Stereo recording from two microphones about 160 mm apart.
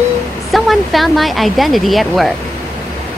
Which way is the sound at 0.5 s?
Centre (ahead or behind).